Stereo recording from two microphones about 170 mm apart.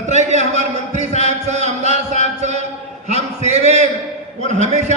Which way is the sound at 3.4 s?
40° right (ahead or behind).